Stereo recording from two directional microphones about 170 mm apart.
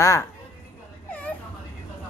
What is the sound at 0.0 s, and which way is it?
Speech, 20° left (ahead or behind).